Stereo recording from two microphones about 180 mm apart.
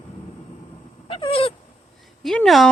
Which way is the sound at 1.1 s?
30° left (ahead or behind).